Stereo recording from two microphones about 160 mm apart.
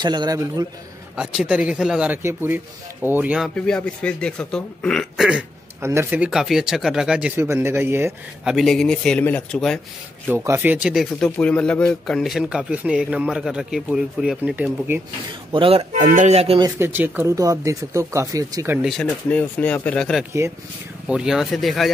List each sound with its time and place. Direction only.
0.0 s speech: 25° right (ahead or behind)
1.1 s speech: 5° right (ahead or behind)
5.8 s speech: 15° right (ahead or behind)
8.5 s speech: centre (ahead or behind)
10.2 s speech: 15° right (ahead or behind)
15.5 s speech: 35° right (ahead or behind)
16.5 s speech: 20° right (ahead or behind)
18.8 s speech: centre (ahead or behind)